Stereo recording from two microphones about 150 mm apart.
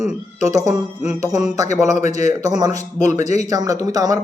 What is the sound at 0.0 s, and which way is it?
A man's voice, 20° right (ahead or behind).